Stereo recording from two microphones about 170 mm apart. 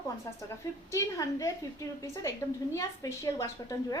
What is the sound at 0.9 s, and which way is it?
Speech, 20° left (ahead or behind).